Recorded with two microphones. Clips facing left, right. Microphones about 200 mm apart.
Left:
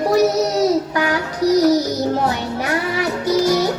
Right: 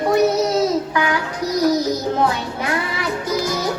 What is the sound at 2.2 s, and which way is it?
Music, 40° left (ahead or behind).